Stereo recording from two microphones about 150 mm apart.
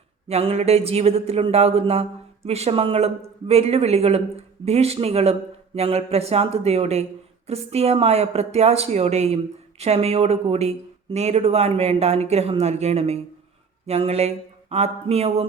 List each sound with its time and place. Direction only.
0.3 s a woman's voice: 45° right (ahead or behind)